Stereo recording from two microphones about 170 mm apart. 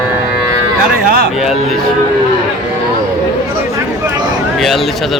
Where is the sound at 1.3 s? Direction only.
5° right (ahead or behind).